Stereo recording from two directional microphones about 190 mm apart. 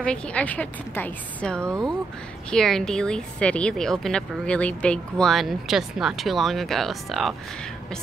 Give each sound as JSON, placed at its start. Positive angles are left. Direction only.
{"t": 0.0, "sound": "a woman's voice", "side_deg": 5}